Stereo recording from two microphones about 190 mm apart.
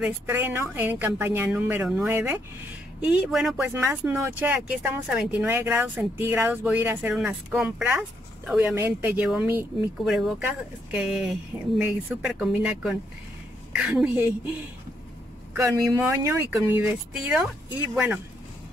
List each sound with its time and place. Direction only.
0.0 s speech: 10° right (ahead or behind)
3.7 s speech: 10° right (ahead or behind)
15.5 s speech: 15° right (ahead or behind)